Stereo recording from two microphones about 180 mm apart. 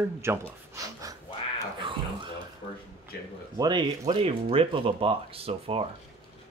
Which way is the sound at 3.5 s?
20° right (ahead or behind).